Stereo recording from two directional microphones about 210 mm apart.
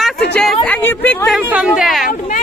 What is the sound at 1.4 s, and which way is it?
Speech, 5° right (ahead or behind).